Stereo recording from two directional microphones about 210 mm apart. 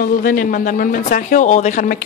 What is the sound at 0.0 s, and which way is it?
A woman's voice, 40° left (ahead or behind).